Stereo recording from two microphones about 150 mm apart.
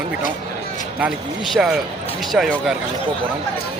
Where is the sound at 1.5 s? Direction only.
Centre (ahead or behind).